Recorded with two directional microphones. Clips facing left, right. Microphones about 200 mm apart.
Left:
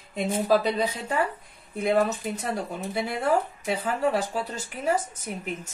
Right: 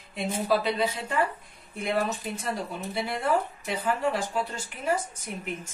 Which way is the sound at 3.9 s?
40° left (ahead or behind).